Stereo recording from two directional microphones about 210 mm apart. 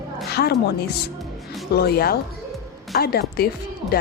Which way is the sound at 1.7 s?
50° left (ahead or behind).